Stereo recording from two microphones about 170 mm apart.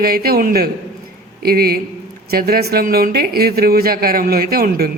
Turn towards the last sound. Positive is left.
turn(degrees=-60)  # may be behind; listen again after turning